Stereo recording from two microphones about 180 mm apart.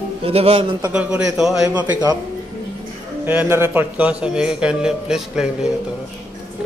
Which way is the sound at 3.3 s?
10° right (ahead or behind).